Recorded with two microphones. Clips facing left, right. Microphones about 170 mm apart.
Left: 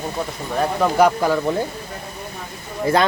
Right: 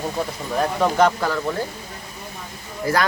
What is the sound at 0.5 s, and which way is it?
Speech, 5° left (ahead or behind).